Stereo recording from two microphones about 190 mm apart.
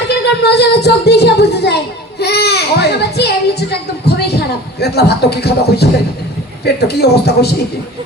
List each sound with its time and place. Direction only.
0.1 s a woman's voice: 60° left (ahead or behind)